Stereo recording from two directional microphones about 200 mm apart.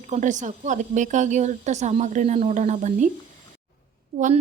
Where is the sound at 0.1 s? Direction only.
40° right (ahead or behind).